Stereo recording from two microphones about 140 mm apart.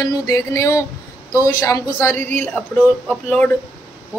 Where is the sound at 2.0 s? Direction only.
15° left (ahead or behind).